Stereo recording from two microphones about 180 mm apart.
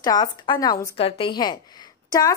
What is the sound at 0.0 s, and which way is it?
A woman's voice, 20° left (ahead or behind).